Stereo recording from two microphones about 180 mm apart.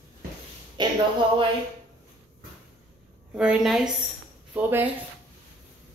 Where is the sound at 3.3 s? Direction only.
5° right (ahead or behind).